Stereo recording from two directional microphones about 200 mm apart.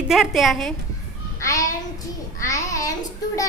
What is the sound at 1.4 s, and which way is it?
Child singing, 15° left (ahead or behind).